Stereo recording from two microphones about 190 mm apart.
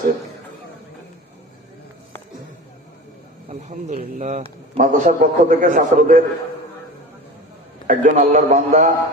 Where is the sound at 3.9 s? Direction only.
40° right (ahead or behind).